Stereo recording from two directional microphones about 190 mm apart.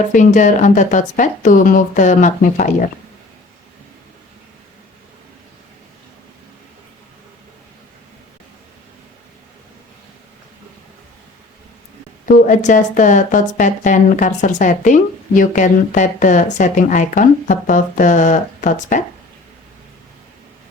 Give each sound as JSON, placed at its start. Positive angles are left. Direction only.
{"t": 0.1, "sound": "speech", "side_deg": 40}
{"t": 12.2, "sound": "speech", "side_deg": 45}